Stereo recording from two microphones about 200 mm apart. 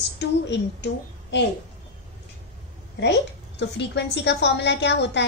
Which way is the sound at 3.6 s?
60° left (ahead or behind).